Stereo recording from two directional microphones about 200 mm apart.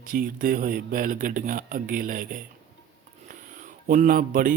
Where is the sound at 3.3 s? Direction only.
40° right (ahead or behind).